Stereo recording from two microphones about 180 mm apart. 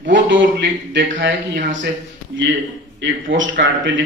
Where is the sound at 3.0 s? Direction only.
90° right.